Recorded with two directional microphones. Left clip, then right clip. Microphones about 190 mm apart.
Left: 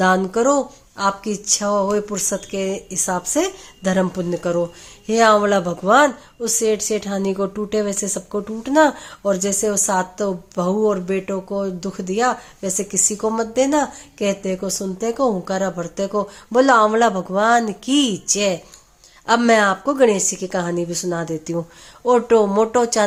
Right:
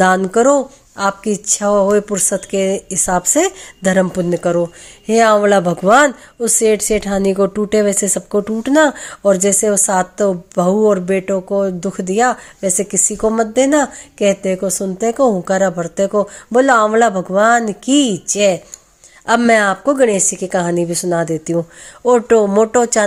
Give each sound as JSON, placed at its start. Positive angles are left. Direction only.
{"t": 0.0, "sound": "speech", "side_deg": -35}